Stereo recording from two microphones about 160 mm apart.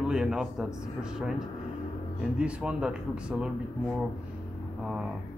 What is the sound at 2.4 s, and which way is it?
Speech, 5° right (ahead or behind).